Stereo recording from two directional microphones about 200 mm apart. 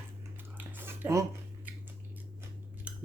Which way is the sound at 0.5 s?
10° right (ahead or behind).